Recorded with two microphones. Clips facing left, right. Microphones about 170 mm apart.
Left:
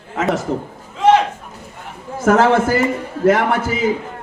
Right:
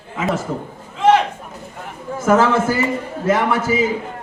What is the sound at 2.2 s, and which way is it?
A man's voice, 65° left (ahead or behind).